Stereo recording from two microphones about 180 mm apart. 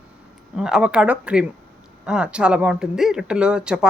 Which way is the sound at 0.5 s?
5° right (ahead or behind).